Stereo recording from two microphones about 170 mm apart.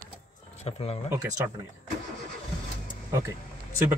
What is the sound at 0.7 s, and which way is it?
Speech, 35° left (ahead or behind).